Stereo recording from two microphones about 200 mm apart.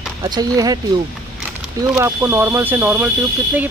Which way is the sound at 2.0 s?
15° right (ahead or behind).